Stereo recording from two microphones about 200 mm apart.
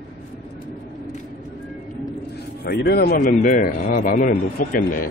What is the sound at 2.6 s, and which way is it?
A man's voice, 50° left (ahead or behind).